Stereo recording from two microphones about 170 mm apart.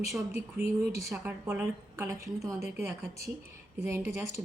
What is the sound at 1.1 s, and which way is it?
Speech, 10° right (ahead or behind).